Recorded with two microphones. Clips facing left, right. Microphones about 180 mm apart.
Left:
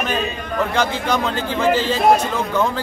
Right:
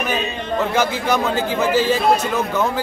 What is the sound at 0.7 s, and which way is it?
Speech, 10° right (ahead or behind).